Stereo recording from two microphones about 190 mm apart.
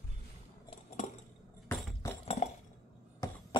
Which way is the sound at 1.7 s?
10° left (ahead or behind).